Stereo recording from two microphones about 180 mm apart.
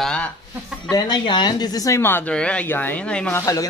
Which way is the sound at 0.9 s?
25° left (ahead or behind).